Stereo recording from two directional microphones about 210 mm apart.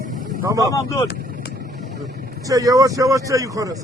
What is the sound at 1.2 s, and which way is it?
Vehicle, 45° right (ahead or behind).